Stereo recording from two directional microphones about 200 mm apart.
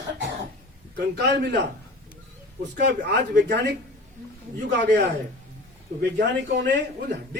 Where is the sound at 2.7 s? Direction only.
50° right (ahead or behind).